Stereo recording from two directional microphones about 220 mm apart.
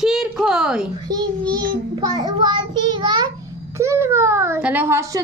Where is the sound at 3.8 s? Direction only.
10° right (ahead or behind).